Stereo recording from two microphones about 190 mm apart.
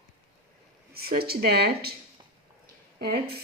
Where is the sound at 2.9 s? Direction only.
55° right (ahead or behind).